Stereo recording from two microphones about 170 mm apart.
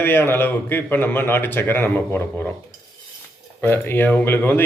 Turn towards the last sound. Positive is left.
turn(degrees=10)  # may be behind; listen again after turning